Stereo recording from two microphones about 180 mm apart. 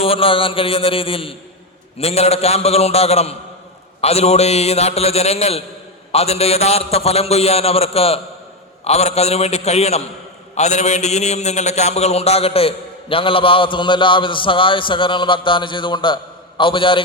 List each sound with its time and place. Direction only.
0.0 s a man's voice: 30° left (ahead or behind)